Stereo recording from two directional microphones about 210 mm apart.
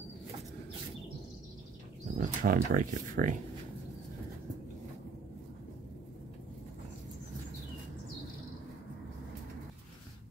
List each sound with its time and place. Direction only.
2.1 s speech: 40° right (ahead or behind)